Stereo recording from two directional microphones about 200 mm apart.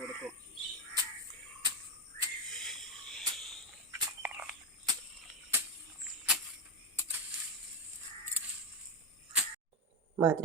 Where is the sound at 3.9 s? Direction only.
10° right (ahead or behind).